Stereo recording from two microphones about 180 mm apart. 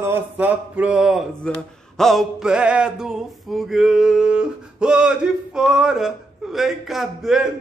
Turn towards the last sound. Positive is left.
turn(degrees=0)  # may be behind; listen again after turning